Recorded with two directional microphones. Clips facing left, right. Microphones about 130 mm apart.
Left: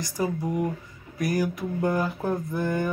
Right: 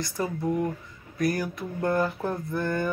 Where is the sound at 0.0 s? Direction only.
15° left (ahead or behind).